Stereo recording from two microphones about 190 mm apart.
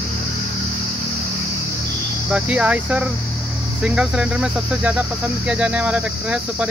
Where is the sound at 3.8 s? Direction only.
5° right (ahead or behind).